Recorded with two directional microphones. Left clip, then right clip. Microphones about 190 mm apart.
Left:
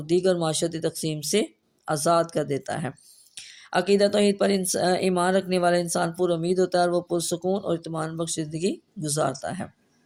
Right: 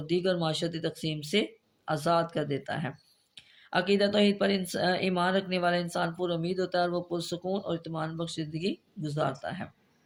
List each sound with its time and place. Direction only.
0.2 s speech: 50° left (ahead or behind)